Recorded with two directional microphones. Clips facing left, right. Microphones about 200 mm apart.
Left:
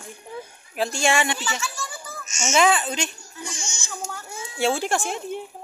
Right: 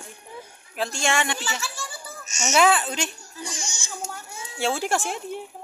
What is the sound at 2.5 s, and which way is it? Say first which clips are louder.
Speech: even; centre (ahead or behind).